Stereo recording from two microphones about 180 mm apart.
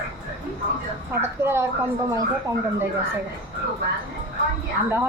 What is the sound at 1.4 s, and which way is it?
Speech, 15° right (ahead or behind).